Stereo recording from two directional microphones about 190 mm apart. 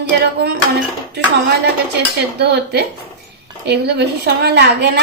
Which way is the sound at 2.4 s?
60° right (ahead or behind).